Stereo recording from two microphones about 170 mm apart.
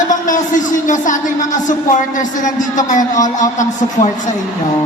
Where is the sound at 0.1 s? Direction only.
50° left (ahead or behind).